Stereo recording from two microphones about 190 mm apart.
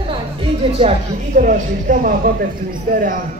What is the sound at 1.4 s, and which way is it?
Speech, 45° right (ahead or behind).